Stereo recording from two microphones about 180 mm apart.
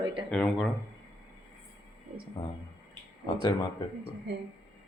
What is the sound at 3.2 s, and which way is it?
Speech, 25° left (ahead or behind).